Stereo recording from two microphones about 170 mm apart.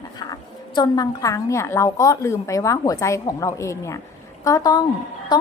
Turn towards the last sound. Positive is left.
turn(degrees=25)  # may be behind; listen again after turning